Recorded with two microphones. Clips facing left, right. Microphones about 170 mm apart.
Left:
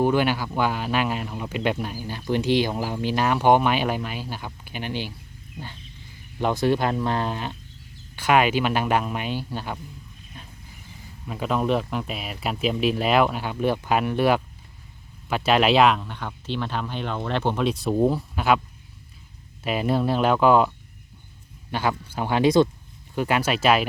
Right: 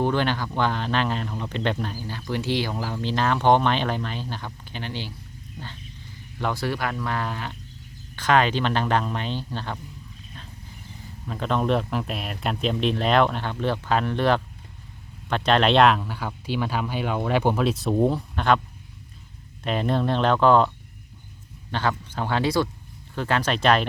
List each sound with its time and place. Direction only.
0.0 s speech: 10° left (ahead or behind)
6.4 s speech: 20° left (ahead or behind)
8.1 s speech: 10° left (ahead or behind)
11.3 s speech: 5° left (ahead or behind)
19.6 s speech: 5° left (ahead or behind)